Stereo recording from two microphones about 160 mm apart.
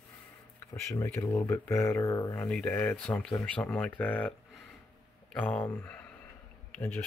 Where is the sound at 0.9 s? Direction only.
10° left (ahead or behind).